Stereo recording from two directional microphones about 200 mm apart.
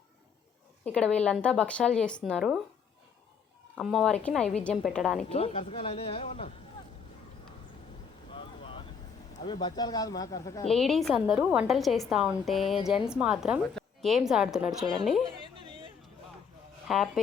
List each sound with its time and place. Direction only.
0.9 s a woman's voice: 5° left (ahead or behind)
3.8 s a woman's voice: centre (ahead or behind)
5.3 s speech: 30° left (ahead or behind)
8.3 s boat: 25° left (ahead or behind)
9.4 s speech: 20° left (ahead or behind)
10.7 s a woman's voice: centre (ahead or behind)
15.4 s a sound: 25° right (ahead or behind)
16.9 s a woman's voice: centre (ahead or behind)